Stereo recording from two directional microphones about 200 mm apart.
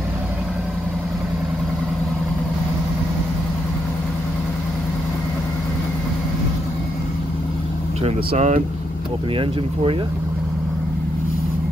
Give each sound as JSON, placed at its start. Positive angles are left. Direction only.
{"t": 8.0, "sound": "speech", "side_deg": -30}